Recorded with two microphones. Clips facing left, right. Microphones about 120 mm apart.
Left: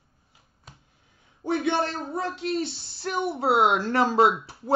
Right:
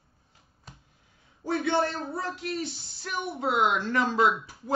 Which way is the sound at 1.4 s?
20° left (ahead or behind).